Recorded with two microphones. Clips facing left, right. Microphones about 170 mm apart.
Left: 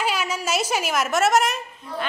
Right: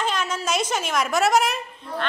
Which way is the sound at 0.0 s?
10° left (ahead or behind).